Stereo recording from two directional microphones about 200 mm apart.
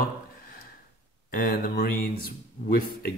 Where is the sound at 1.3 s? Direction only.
45° left (ahead or behind).